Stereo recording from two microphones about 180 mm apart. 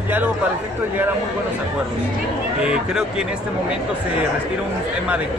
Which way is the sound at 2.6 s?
5° right (ahead or behind).